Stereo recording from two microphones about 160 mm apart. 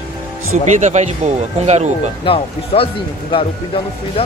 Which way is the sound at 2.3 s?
35° left (ahead or behind).